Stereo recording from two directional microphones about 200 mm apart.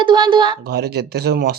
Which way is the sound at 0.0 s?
25° right (ahead or behind).